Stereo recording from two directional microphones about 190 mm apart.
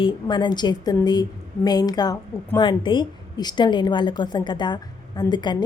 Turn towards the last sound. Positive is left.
turn(degrees=25)  # may be behind; listen again after turning